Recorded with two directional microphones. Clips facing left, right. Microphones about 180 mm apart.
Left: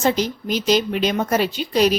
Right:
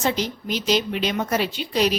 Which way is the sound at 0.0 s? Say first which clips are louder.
Left 4 dB; 45° left (ahead or behind).